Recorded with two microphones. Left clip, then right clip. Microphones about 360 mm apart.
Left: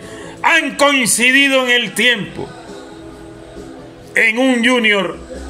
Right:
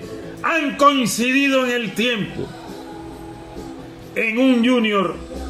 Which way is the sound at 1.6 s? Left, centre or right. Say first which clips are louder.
Left 7 dB; left.